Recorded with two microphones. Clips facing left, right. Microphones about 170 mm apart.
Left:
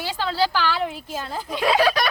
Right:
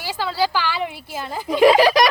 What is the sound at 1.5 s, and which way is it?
Speech, 90° right.